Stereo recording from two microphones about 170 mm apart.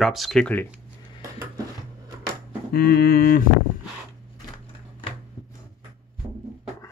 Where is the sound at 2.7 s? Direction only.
60° left (ahead or behind).